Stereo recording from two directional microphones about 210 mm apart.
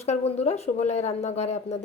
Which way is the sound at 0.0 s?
30° left (ahead or behind).